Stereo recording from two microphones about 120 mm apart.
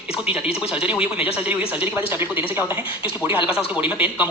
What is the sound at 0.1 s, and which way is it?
A man's voice, 5° right (ahead or behind).